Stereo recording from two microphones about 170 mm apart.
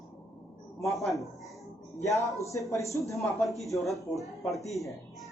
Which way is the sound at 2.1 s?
20° left (ahead or behind).